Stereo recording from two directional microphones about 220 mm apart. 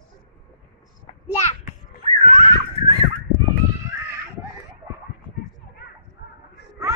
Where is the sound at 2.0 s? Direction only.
25° right (ahead or behind).